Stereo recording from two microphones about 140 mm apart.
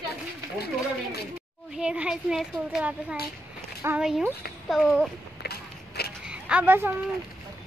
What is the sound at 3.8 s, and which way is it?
Speech, 15° right (ahead or behind).